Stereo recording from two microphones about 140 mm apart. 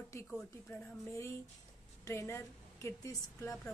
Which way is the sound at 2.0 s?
20° left (ahead or behind).